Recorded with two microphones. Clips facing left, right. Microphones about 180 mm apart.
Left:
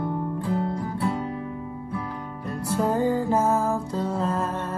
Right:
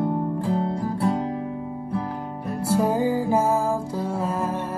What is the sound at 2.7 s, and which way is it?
Music, 10° right (ahead or behind).